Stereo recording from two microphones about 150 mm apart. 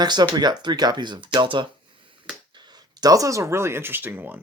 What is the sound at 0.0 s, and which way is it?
Speech, 25° right (ahead or behind).